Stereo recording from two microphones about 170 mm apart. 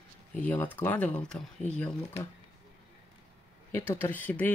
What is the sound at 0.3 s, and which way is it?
Speech, 10° left (ahead or behind).